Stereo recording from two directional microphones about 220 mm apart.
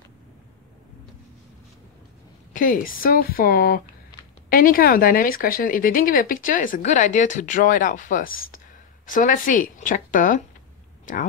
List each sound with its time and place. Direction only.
2.5 s speech: 40° left (ahead or behind)